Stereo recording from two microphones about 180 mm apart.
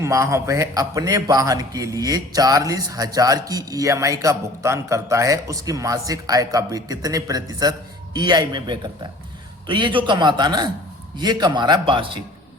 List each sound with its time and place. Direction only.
0.0 s a man's voice: 15° right (ahead or behind)